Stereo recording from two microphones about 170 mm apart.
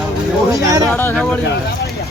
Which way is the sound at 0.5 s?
20° right (ahead or behind).